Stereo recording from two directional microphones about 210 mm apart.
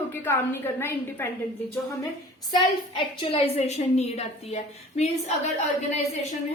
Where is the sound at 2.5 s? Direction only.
25° left (ahead or behind).